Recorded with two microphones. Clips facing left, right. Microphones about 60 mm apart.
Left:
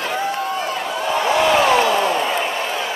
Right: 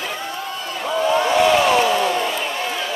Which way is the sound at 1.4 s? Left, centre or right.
Centre.